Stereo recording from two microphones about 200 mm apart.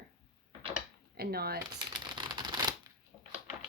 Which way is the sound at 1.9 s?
20° right (ahead or behind).